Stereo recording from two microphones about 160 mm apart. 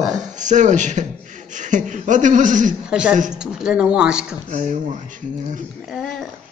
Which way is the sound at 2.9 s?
5° right (ahead or behind).